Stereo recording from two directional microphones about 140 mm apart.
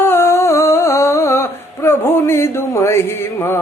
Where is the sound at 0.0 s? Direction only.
15° left (ahead or behind).